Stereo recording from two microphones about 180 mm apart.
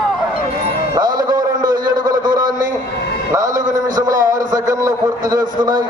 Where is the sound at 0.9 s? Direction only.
20° right (ahead or behind).